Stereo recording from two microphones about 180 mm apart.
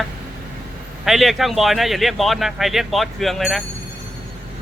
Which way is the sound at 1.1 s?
Centre (ahead or behind).